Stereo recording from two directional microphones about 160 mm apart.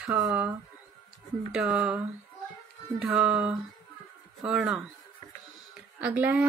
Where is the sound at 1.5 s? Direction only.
5° right (ahead or behind).